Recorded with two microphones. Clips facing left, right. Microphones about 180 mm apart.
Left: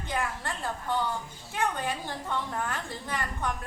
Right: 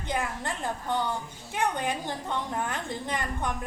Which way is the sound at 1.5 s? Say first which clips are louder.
Right 2 dB; 20° right (ahead or behind).